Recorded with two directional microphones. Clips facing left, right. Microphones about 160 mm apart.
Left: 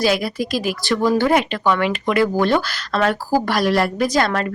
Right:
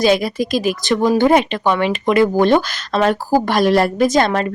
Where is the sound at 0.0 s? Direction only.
20° right (ahead or behind).